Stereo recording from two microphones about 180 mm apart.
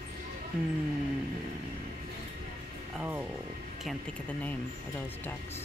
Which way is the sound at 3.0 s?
10° right (ahead or behind).